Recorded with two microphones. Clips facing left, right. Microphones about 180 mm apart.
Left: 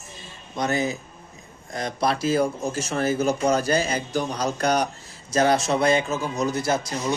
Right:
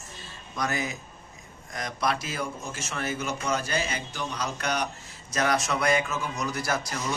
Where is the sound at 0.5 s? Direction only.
25° left (ahead or behind).